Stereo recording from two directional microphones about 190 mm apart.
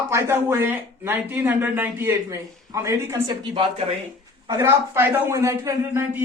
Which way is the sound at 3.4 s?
25° right (ahead or behind).